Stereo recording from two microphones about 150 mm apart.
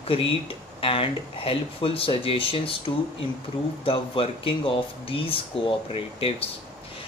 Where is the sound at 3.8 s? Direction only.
35° left (ahead or behind).